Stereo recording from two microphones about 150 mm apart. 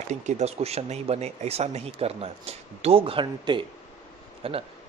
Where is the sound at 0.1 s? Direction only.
50° right (ahead or behind).